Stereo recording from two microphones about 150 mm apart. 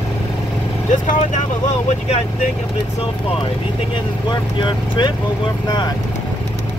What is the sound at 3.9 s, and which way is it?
Speech, 30° left (ahead or behind).